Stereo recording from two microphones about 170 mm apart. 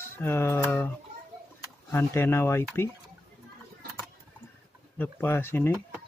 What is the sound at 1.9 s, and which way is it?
Speech, 15° left (ahead or behind).